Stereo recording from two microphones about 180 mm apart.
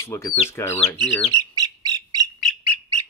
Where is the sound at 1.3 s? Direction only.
20° right (ahead or behind).